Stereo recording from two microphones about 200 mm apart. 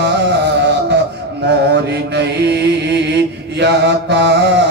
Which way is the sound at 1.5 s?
55° right (ahead or behind).